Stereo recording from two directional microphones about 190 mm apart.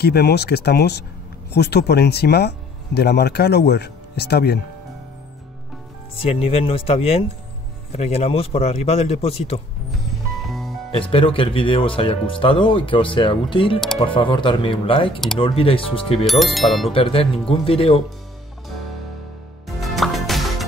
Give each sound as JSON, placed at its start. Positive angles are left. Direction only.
{"t": 0.0, "sound": "speech", "side_deg": 60}
{"t": 6.1, "sound": "a man's voice", "side_deg": 30}
{"t": 10.9, "sound": "speech", "side_deg": 30}
{"t": 16.3, "sound": "speech", "side_deg": 0}
{"t": 16.9, "sound": "speech", "side_deg": 30}
{"t": 19.8, "sound": "music", "side_deg": 0}